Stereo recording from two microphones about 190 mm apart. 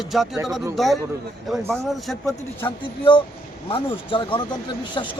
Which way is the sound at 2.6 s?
25° left (ahead or behind).